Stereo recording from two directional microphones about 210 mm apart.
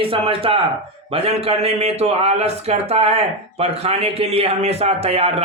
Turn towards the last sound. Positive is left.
turn(degrees=-30)  # may be behind; listen again after turning